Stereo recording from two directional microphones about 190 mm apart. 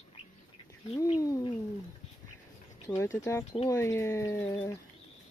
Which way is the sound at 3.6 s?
15° left (ahead or behind).